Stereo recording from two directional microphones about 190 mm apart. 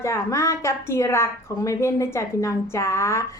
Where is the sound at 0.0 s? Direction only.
15° left (ahead or behind).